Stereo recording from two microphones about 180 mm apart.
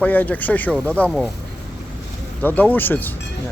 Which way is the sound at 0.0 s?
10° left (ahead or behind).